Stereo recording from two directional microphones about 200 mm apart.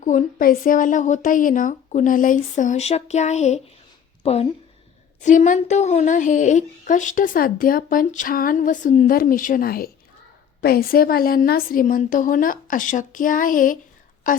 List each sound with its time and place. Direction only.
0.0 s a woman's voice: 40° left (ahead or behind)